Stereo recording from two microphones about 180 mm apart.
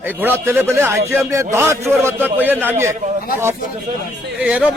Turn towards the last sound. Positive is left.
turn(degrees=-5)  # may be behind; listen again after turning